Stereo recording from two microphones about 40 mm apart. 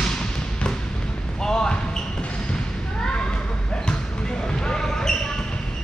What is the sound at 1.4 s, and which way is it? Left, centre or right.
Basketball bounce, centre.